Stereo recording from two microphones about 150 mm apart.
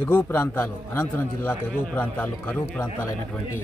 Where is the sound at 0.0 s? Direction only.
15° left (ahead or behind).